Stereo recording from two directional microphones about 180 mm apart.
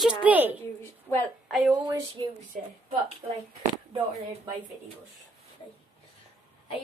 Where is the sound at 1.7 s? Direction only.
20° right (ahead or behind).